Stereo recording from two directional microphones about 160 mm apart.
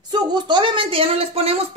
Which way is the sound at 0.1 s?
30° right (ahead or behind).